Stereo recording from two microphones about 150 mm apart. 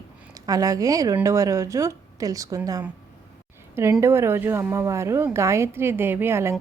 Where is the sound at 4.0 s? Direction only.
15° right (ahead or behind).